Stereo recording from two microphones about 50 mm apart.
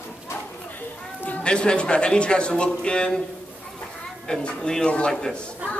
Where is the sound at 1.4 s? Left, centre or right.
Centre.